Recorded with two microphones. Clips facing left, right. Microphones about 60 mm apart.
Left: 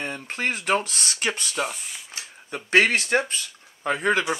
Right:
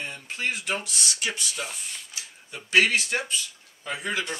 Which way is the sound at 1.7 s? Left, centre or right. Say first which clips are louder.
Left 2 dB; centre.